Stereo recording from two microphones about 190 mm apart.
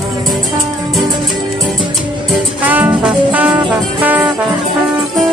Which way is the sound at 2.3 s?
10° right (ahead or behind).